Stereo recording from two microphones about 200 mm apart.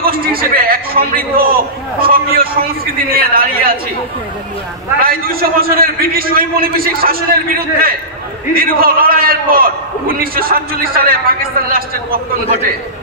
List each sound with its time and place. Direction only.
0.0 s a man's voice: 45° right (ahead or behind)
5.0 s a man's voice: 45° right (ahead or behind)